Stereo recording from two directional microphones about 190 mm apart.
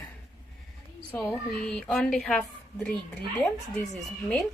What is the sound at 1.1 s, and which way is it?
A woman's voice, centre (ahead or behind).